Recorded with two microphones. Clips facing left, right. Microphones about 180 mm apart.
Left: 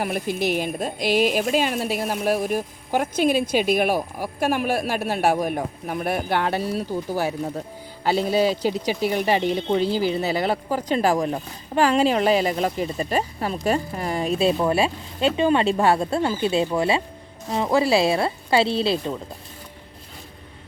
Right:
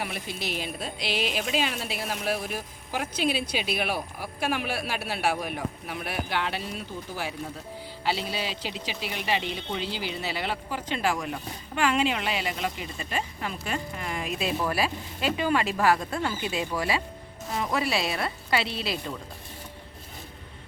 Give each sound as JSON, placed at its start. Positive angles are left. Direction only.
{"t": 0.0, "sound": "speech", "side_deg": 50}